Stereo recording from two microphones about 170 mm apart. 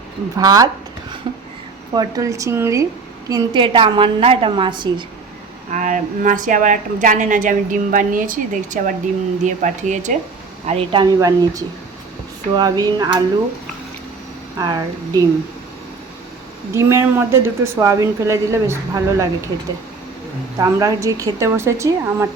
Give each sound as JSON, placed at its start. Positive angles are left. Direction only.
{"t": 0.3, "sound": "a woman's voice", "side_deg": -20}
{"t": 1.9, "sound": "a woman's voice", "side_deg": -25}
{"t": 5.7, "sound": "a woman's voice", "side_deg": -50}
{"t": 10.7, "sound": "speech", "side_deg": -35}
{"t": 11.0, "sound": "a woman's voice", "side_deg": -20}
{"t": 14.6, "sound": "a woman's voice", "side_deg": -20}
{"t": 16.7, "sound": "a woman's voice", "side_deg": -15}
{"t": 20.6, "sound": "a woman's voice", "side_deg": -20}